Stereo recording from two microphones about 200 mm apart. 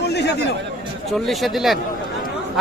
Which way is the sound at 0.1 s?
60° left (ahead or behind).